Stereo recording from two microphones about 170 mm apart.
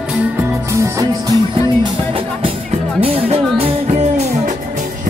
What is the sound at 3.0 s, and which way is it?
Music, 35° right (ahead or behind).